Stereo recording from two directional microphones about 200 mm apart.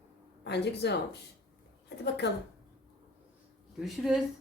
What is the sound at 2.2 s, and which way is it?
Speech, 55° left (ahead or behind).